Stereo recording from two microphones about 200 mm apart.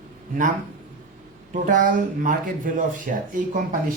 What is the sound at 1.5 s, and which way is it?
Speech, 40° right (ahead or behind).